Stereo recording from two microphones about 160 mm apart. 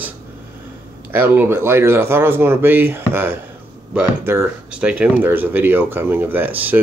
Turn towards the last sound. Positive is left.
turn(degrees=-10)  # may be behind; listen again after turning